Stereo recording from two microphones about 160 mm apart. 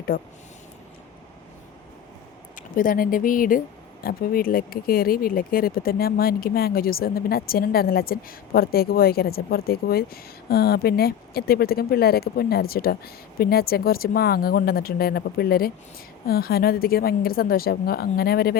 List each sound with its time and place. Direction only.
0.1 s speech: 65° left (ahead or behind)
2.6 s speech: 60° left (ahead or behind)